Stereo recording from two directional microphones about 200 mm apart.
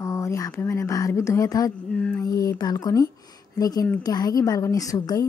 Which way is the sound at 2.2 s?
15° left (ahead or behind).